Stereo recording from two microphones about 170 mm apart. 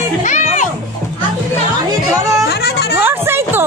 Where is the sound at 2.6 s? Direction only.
70° left (ahead or behind).